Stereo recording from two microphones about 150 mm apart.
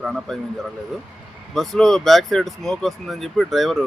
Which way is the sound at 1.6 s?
Centre (ahead or behind).